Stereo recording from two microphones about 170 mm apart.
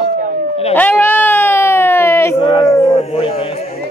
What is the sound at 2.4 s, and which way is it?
A man's voice, 30° left (ahead or behind).